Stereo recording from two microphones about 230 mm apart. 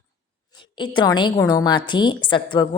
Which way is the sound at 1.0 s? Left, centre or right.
Centre.